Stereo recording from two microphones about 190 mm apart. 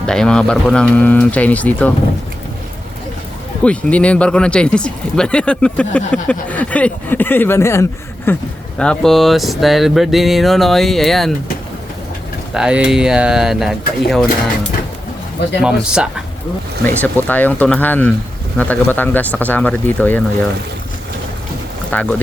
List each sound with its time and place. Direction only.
0.0 s speech: 5° left (ahead or behind)
3.6 s speech: 5° left (ahead or behind)
12.5 s speech: 5° right (ahead or behind)
15.6 s speech: 5° right (ahead or behind)
16.8 s speech: 10° left (ahead or behind)
21.9 s speech: 10° left (ahead or behind)